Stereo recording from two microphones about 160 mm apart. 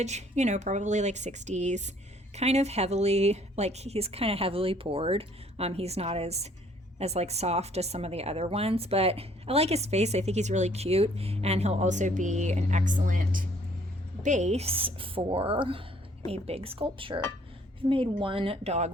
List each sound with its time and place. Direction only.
0.0 s speech: 45° right (ahead or behind)